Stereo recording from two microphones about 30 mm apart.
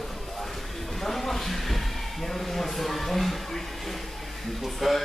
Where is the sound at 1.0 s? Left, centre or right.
Centre.